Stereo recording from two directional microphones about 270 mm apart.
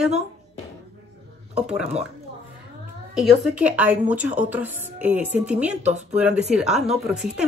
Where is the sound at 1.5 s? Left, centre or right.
Centre.